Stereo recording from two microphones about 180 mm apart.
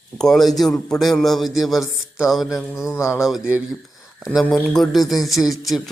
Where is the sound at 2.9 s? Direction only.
15° left (ahead or behind).